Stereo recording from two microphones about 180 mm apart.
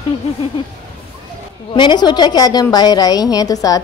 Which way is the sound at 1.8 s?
25° left (ahead or behind).